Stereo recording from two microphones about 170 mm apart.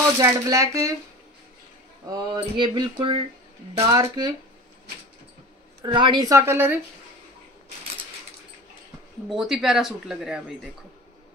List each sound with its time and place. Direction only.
0.2 s speech: 20° right (ahead or behind)
2.0 s speech: 25° right (ahead or behind)
5.9 s speech: 30° right (ahead or behind)
9.3 s speech: centre (ahead or behind)